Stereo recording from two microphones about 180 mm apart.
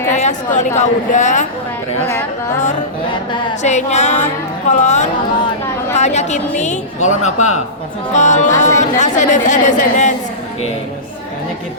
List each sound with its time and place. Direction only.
0.1 s speech: 40° left (ahead or behind)
3.1 s music: 25° left (ahead or behind)
3.6 s a woman's voice: 40° left (ahead or behind)